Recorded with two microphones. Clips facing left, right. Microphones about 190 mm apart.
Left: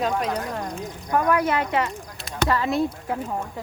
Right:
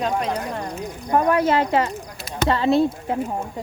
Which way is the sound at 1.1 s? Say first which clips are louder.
Right 3 dB; 25° right (ahead or behind).